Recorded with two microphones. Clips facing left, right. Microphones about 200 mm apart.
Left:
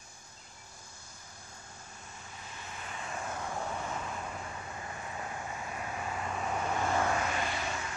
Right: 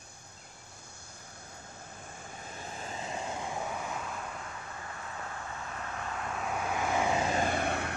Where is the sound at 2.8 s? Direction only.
30° right (ahead or behind).